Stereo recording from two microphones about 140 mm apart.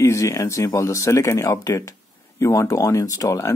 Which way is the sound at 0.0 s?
20° left (ahead or behind).